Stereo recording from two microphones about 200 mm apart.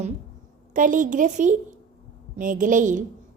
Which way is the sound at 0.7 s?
40° right (ahead or behind).